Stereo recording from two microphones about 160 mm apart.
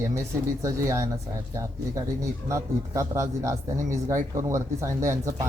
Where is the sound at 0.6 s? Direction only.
20° right (ahead or behind).